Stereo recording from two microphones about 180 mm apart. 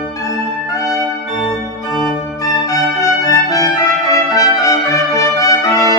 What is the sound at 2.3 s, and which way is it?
Music, 20° left (ahead or behind).